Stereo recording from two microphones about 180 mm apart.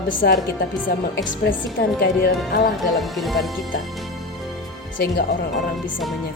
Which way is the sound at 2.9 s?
Centre (ahead or behind).